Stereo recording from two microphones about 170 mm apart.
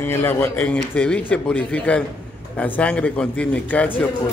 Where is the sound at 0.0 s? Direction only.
15° left (ahead or behind).